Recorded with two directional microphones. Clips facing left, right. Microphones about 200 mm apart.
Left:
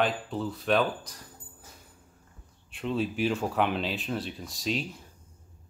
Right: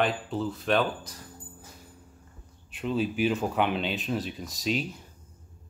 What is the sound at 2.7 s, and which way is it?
Speech, centre (ahead or behind).